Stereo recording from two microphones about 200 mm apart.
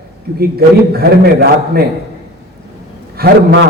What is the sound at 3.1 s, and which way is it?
Speech, 50° right (ahead or behind).